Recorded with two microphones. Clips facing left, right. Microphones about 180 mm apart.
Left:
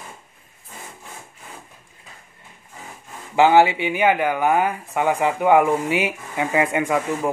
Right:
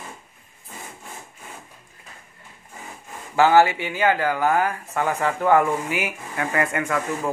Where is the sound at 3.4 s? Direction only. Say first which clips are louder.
Left 2 dB; 20° left (ahead or behind).